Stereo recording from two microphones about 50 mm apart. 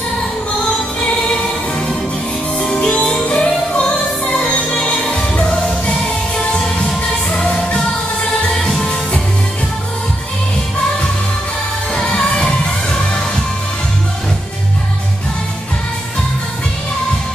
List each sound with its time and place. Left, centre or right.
1.0 s music: centre
8.5 s music: centre
11.9 s music: centre